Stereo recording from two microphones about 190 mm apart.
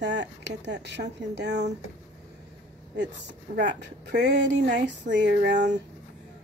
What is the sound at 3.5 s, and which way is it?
Speech, 65° right (ahead or behind).